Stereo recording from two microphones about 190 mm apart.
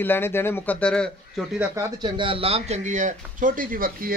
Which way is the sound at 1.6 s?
15° right (ahead or behind).